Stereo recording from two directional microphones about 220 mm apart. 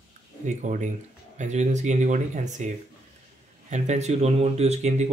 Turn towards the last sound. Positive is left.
turn(degrees=-30)  # may be behind; listen again after turning